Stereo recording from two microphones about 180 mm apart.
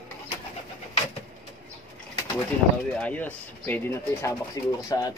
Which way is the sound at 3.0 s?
5° left (ahead or behind).